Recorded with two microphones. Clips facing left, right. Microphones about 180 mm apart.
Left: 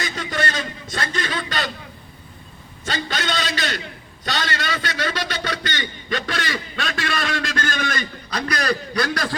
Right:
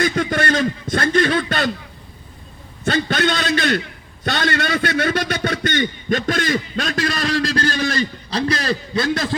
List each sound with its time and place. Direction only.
0.0 s a man's voice: 50° right (ahead or behind)
2.8 s a man's voice: 55° right (ahead or behind); by 9.3 s 25° right (ahead or behind)